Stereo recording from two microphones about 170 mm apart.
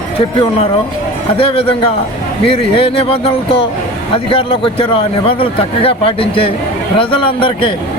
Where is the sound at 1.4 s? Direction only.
35° left (ahead or behind).